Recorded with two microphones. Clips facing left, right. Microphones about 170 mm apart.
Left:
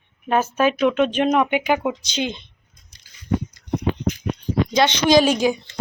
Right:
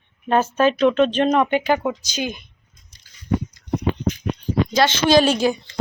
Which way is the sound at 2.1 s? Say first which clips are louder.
Left 1 dB; 25° left (ahead or behind).